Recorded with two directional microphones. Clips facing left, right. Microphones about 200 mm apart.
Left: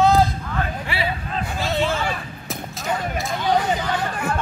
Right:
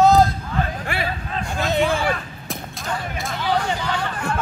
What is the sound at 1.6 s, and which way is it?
Speech, 15° right (ahead or behind).